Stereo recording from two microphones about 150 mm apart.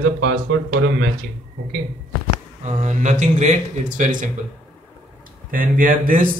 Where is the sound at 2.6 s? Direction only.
50° right (ahead or behind).